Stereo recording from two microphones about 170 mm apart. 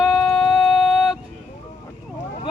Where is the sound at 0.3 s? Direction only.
Centre (ahead or behind).